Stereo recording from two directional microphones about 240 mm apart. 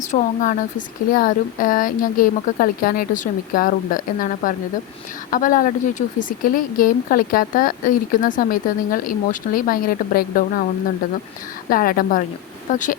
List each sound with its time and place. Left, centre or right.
0.1 s speech: left
11.7 s speech: left